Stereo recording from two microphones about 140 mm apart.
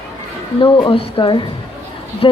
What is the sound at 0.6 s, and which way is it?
Speech, 40° left (ahead or behind).